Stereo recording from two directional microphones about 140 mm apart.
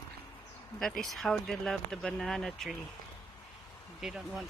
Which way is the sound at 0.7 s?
Centre (ahead or behind).